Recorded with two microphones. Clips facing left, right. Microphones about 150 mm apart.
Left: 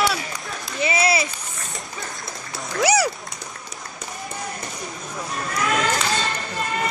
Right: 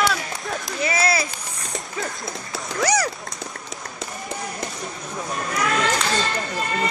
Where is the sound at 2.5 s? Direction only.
10° left (ahead or behind).